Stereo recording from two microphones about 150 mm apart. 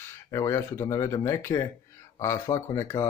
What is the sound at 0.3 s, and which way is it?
Speech, 20° left (ahead or behind).